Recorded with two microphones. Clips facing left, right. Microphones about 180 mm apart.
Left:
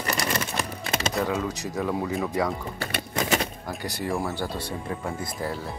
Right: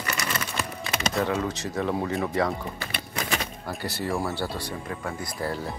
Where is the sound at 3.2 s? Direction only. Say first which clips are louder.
Left 5 dB; 40° left (ahead or behind).